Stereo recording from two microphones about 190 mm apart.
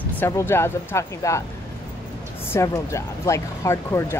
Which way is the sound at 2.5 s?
15° left (ahead or behind).